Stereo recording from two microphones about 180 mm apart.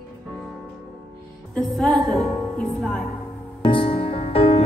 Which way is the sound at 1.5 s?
5° left (ahead or behind).